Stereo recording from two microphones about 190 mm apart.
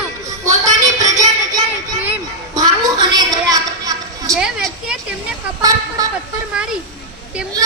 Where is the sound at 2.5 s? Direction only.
20° right (ahead or behind).